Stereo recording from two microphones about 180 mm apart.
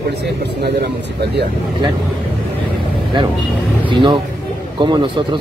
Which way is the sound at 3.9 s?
25° right (ahead or behind).